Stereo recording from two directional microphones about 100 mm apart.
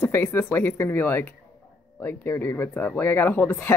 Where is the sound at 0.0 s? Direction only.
20° left (ahead or behind).